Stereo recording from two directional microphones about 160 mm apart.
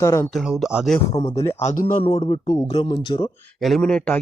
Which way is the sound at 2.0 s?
35° left (ahead or behind).